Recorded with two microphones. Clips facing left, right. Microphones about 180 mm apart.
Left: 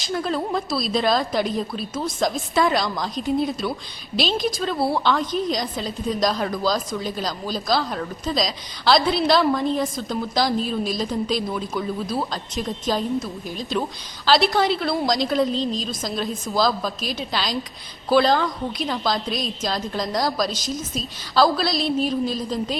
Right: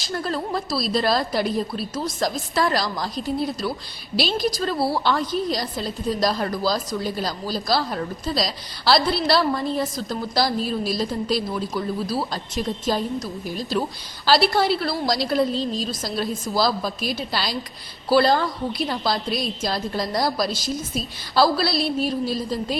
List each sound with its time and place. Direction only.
0.1 s a woman's voice: centre (ahead or behind)